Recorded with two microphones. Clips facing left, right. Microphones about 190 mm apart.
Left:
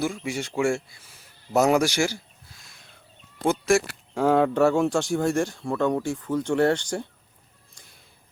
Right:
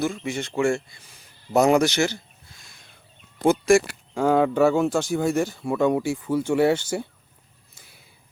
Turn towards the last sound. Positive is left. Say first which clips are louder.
# right 1 dB
turn(degrees=-5)  # may be behind; listen again after turning